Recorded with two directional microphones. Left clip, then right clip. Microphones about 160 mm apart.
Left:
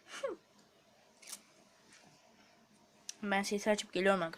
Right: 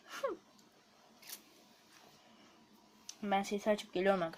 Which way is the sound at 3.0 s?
15° left (ahead or behind).